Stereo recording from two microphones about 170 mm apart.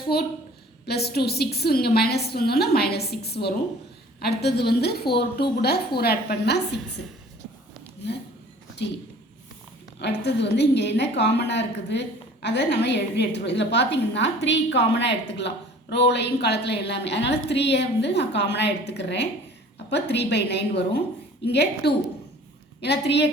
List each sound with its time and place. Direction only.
0.1 s a woman's voice: 65° left (ahead or behind)
10.0 s a woman's voice: 90° left
22.8 s a woman's voice: 90° left